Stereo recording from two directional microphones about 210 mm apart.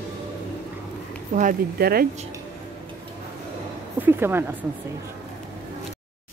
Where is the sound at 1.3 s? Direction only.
40° right (ahead or behind).